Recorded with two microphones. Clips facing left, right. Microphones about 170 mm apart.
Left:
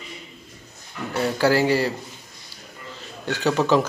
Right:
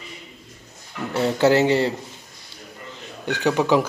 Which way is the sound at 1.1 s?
25° right (ahead or behind).